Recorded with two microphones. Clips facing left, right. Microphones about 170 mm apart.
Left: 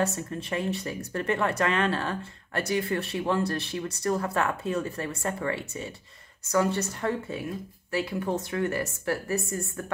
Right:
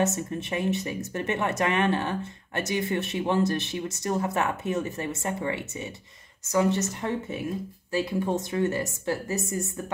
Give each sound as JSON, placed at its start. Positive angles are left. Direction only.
{"t": 0.0, "sound": "speech", "side_deg": -20}